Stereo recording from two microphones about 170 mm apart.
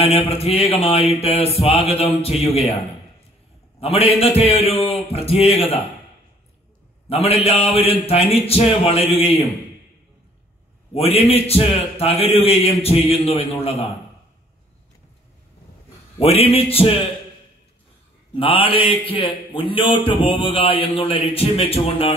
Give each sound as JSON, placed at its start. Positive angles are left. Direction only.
{"t": 0.0, "sound": "speech", "side_deg": 35}
{"t": 3.8, "sound": "speech", "side_deg": 35}
{"t": 7.1, "sound": "speech", "side_deg": 35}
{"t": 11.0, "sound": "speech", "side_deg": 35}
{"t": 16.2, "sound": "speech", "side_deg": 35}
{"t": 18.3, "sound": "speech", "side_deg": 30}